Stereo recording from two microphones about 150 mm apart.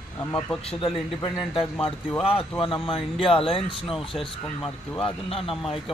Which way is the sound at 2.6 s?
35° left (ahead or behind).